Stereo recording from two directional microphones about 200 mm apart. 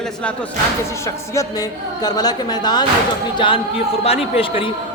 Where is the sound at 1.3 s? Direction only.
20° left (ahead or behind).